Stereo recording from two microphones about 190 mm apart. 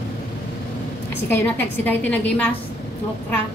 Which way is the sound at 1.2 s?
10° left (ahead or behind).